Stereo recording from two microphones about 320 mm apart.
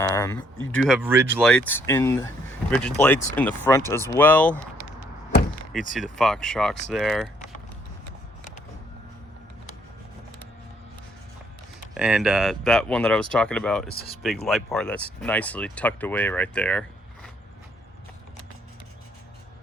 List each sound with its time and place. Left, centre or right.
0.0 s speech: centre
5.9 s speech: centre
11.9 s speech: centre
13.9 s speech: centre
14.4 s speech: centre